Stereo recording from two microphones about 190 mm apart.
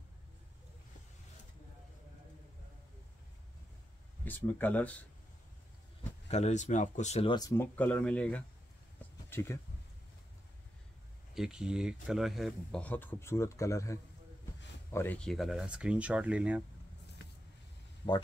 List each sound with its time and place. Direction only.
4.2 s speech: 10° left (ahead or behind)
6.2 s speech: 35° left (ahead or behind)
7.3 s speech: 20° left (ahead or behind)
7.7 s speech: 5° left (ahead or behind)
11.3 s speech: 5° right (ahead or behind)
18.0 s speech: 25° left (ahead or behind)